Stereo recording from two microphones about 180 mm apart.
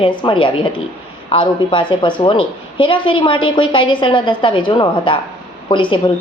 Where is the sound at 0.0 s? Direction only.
30° left (ahead or behind).